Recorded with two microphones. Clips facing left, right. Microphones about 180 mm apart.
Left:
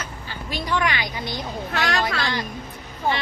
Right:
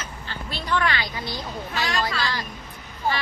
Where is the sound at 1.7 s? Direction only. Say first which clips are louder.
Left 3 dB; 70° left (ahead or behind).